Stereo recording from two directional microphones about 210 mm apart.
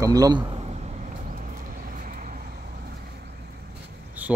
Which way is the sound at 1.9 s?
40° right (ahead or behind).